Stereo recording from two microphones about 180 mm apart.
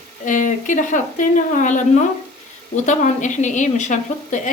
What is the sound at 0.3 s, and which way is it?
A woman's voice, 45° left (ahead or behind).